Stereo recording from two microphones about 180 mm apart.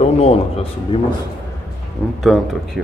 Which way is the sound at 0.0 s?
35° left (ahead or behind).